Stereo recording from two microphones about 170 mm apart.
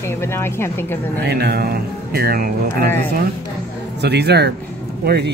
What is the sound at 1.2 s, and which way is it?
Music, 70° right (ahead or behind).